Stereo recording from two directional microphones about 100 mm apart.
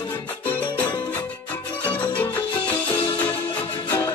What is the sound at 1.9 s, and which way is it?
Music, 15° left (ahead or behind).